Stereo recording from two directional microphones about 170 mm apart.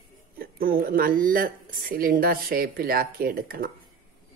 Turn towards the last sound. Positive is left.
turn(degrees=-60)  # may be behind; listen again after turning